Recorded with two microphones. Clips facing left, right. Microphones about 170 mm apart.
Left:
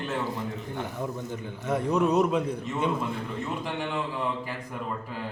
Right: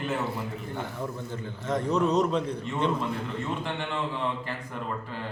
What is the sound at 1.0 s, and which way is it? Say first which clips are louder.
A man's voice: left 1 dB; 15° left (ahead or behind).